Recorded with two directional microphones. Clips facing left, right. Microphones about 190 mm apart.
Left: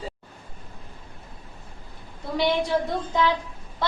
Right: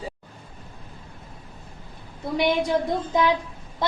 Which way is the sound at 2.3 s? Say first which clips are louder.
Right 1 dB; 15° right (ahead or behind).